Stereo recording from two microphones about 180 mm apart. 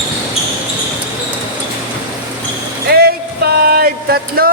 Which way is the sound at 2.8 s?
60° right (ahead or behind).